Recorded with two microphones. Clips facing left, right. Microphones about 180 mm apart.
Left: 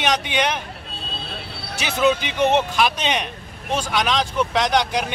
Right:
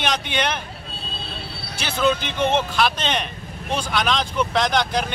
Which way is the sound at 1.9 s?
5° left (ahead or behind).